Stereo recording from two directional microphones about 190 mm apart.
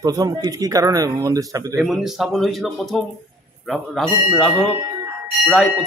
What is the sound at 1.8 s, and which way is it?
Speech, centre (ahead or behind).